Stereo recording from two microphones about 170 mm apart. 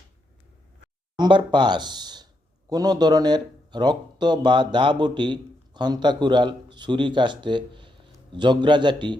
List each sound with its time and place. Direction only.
1.1 s speech: 25° right (ahead or behind)